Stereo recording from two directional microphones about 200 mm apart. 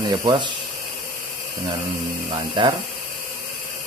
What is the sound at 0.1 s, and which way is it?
Speech, 20° right (ahead or behind).